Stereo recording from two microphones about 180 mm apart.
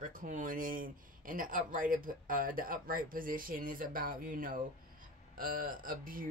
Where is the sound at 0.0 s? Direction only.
45° right (ahead or behind).